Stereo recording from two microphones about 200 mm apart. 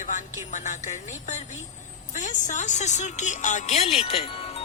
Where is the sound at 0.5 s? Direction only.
35° left (ahead or behind).